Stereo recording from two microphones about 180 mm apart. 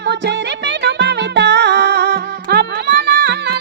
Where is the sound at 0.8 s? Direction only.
70° right (ahead or behind).